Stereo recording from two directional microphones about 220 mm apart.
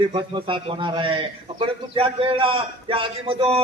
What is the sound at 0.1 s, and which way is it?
A man's voice, 25° right (ahead or behind).